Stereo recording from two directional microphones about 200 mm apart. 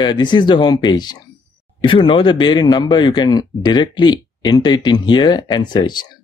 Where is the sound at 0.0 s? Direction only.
20° left (ahead or behind).